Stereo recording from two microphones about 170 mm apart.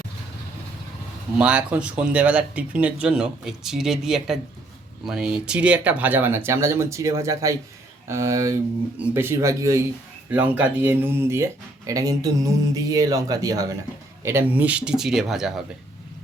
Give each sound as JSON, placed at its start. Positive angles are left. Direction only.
{"t": 1.4, "sound": "speech", "side_deg": -5}